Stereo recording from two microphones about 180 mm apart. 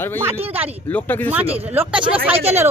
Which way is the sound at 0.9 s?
10° left (ahead or behind).